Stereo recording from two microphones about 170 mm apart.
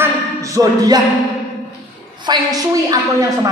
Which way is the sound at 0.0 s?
20° right (ahead or behind).